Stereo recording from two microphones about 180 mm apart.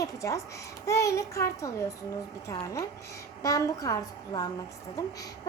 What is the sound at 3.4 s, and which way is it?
A woman's voice, 20° left (ahead or behind).